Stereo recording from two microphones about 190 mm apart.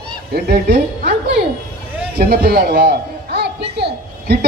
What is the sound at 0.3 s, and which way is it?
Speech, 60° right (ahead or behind).